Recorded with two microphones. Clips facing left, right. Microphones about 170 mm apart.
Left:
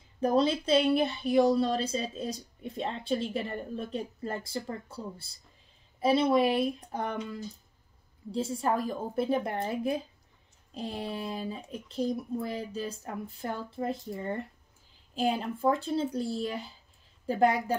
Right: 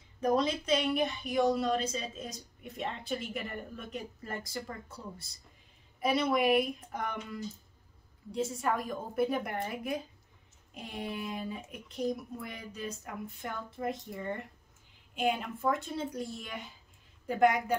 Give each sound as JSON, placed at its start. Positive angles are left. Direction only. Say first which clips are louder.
{"t": 0.2, "sound": "speech", "louder": "left 3 dB", "side_deg": 30}
{"t": 8.3, "sound": "speech", "louder": "left 3 dB", "side_deg": 30}